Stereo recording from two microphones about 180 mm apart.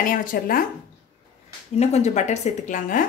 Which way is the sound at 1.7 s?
35° left (ahead or behind).